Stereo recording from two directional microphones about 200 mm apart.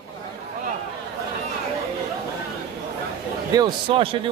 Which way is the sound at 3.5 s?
25° right (ahead or behind).